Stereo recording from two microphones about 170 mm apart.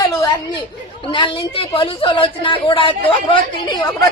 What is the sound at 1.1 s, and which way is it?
A woman's voice, 30° left (ahead or behind).